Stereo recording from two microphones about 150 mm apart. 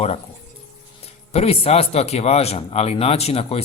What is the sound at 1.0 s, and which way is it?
Speech, 45° left (ahead or behind).